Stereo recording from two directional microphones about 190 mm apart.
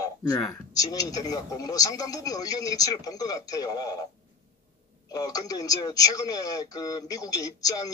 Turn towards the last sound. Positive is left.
turn(degrees=20)  # may be behind; listen again after turning